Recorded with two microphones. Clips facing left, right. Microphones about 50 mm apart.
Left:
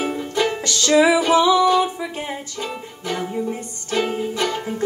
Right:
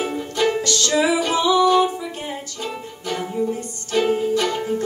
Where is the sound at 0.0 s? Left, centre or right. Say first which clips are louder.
Even; centre.